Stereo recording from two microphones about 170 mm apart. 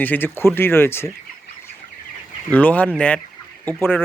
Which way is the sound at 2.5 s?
10° left (ahead or behind).